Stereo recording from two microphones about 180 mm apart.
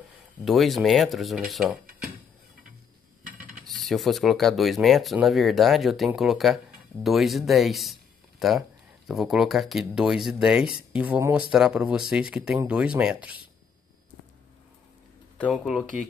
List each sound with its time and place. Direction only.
0.5 s speech: centre (ahead or behind)
3.3 s mechanisms: 50° right (ahead or behind)
3.6 s speech: centre (ahead or behind)
15.3 s speech: 5° left (ahead or behind)